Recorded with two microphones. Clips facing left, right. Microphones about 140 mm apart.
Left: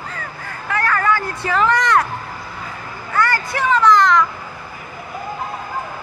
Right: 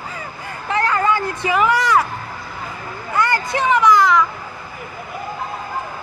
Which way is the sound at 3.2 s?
20° right (ahead or behind).